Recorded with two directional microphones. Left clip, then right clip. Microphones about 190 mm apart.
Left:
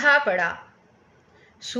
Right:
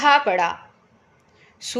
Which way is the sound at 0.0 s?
45° right (ahead or behind).